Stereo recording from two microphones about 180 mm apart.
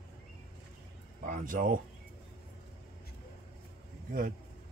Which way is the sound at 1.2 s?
50° right (ahead or behind).